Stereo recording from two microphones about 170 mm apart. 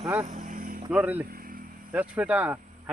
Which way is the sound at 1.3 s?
55° right (ahead or behind).